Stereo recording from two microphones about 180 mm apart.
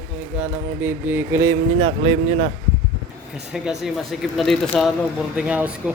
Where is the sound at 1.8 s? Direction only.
30° right (ahead or behind).